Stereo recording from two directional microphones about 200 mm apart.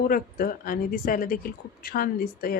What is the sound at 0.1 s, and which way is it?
Speech, 45° left (ahead or behind).